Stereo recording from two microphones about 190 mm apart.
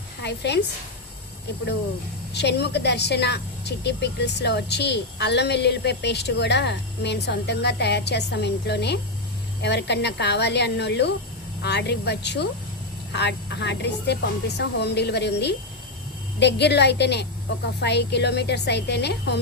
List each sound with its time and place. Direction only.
0.2 s a woman's voice: 65° left (ahead or behind)
2.3 s speech: 60° left (ahead or behind)